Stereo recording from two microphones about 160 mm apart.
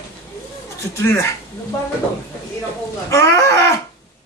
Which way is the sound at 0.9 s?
15° left (ahead or behind).